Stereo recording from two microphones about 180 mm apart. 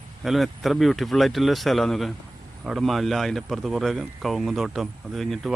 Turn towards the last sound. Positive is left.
turn(degrees=0)  # may be behind; listen again after turning